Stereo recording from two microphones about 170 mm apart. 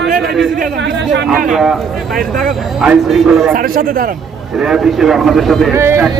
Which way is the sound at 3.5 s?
55° right (ahead or behind).